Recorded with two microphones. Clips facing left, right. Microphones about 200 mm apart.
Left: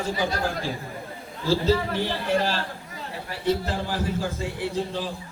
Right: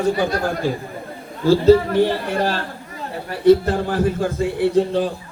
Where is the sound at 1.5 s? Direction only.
55° right (ahead or behind).